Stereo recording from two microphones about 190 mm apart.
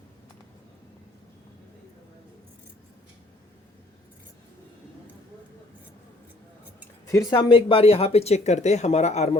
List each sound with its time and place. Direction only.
7.1 s speech: 20° left (ahead or behind); by 9.4 s 35° left (ahead or behind)